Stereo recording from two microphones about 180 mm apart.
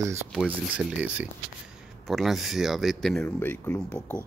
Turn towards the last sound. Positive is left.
turn(degrees=10)  # may be behind; listen again after turning